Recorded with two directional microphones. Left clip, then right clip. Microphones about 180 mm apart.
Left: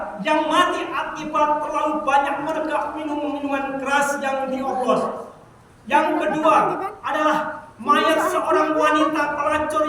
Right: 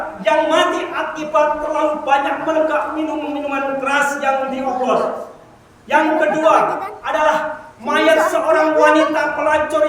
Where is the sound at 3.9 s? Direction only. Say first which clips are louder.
Right 2 dB; 15° right (ahead or behind).